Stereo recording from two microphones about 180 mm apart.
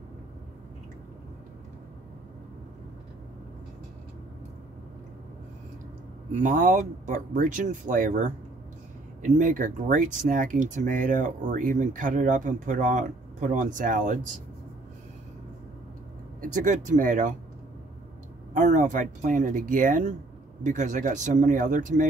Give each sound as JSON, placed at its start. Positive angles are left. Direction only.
{"t": 6.3, "sound": "speech", "side_deg": -45}
{"t": 16.3, "sound": "speech", "side_deg": -45}
{"t": 18.5, "sound": "speech", "side_deg": -45}